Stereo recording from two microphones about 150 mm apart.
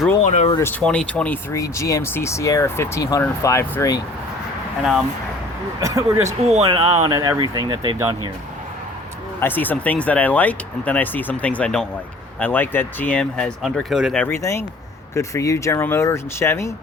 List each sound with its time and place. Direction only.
0.3 s speech: 50° left (ahead or behind)
0.6 s speech: 10° left (ahead or behind)
1.5 s speech: 20° left (ahead or behind)
4.8 s speech: centre (ahead or behind)
5.8 s speech: 20° right (ahead or behind)
6.4 s speech: 45° right (ahead or behind)
7.1 s speech: 25° right (ahead or behind)
9.4 s speech: 10° left (ahead or behind)
14.2 s speech: 15° left (ahead or behind)